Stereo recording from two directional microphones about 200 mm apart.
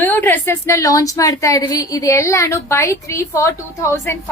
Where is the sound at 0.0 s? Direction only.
10° left (ahead or behind).